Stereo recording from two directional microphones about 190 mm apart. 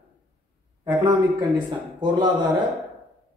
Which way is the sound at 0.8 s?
20° right (ahead or behind).